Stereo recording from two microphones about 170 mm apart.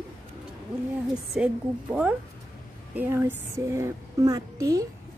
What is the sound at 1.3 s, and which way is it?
Speech, 5° right (ahead or behind).